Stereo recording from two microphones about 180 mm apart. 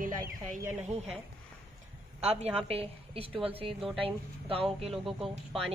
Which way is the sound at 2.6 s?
35° right (ahead or behind).